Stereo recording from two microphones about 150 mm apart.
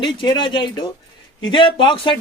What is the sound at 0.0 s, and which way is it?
Speech, 30° left (ahead or behind).